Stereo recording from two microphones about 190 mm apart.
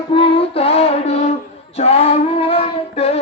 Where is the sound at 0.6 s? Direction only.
30° left (ahead or behind).